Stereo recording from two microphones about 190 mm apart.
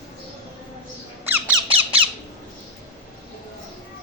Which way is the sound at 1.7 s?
30° right (ahead or behind).